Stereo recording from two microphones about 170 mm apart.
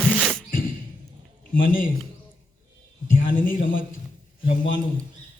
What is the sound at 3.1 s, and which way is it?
Speech, 55° left (ahead or behind).